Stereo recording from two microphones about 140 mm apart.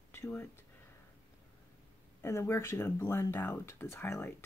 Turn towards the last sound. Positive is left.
turn(degrees=20)  # may be behind; listen again after turning